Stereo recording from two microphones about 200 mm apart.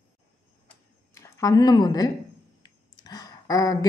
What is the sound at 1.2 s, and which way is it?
Speech, 15° left (ahead or behind).